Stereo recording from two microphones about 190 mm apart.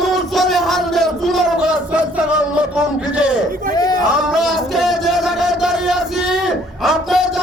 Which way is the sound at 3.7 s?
20° left (ahead or behind).